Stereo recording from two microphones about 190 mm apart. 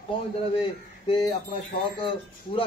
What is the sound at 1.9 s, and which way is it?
Speech, 25° left (ahead or behind).